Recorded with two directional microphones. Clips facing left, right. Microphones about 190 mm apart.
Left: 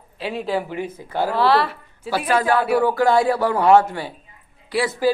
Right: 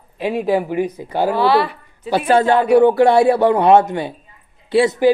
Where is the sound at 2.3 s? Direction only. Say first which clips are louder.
Right 6 dB; 25° right (ahead or behind).